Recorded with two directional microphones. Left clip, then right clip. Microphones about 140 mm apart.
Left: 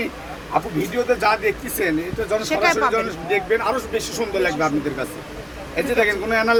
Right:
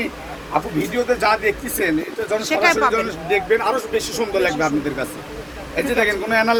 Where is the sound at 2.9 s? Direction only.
20° right (ahead or behind).